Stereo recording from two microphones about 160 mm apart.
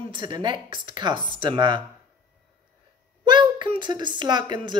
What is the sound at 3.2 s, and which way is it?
Speech, 30° right (ahead or behind).